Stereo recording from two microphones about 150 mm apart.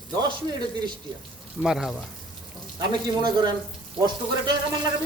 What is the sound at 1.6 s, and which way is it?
Speech, centre (ahead or behind).